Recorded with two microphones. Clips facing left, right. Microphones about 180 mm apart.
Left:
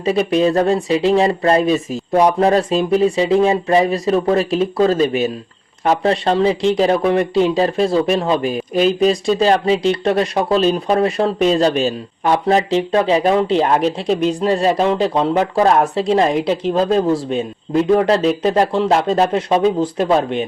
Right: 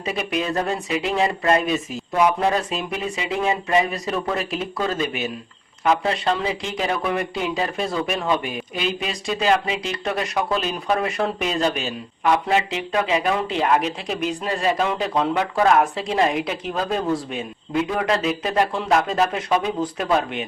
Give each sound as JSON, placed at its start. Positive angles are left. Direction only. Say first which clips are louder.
{"t": 0.0, "sound": "speech", "louder": "left 10 dB", "side_deg": 35}